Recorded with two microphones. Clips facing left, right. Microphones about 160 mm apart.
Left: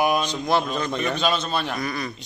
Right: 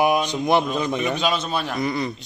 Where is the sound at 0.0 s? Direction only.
20° right (ahead or behind).